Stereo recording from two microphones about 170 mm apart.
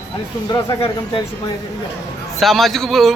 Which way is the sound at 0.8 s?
30° left (ahead or behind).